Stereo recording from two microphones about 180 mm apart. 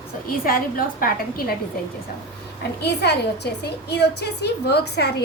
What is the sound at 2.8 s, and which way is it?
A woman's voice, 65° left (ahead or behind).